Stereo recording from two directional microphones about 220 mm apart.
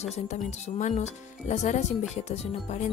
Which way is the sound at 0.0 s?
30° left (ahead or behind).